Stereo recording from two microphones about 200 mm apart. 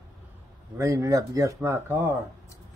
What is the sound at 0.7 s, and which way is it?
Speech, 15° right (ahead or behind).